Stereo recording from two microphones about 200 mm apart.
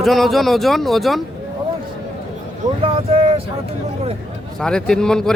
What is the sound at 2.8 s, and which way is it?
Speech, 30° right (ahead or behind).